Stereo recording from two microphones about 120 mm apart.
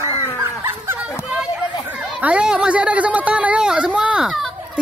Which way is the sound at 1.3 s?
5° right (ahead or behind).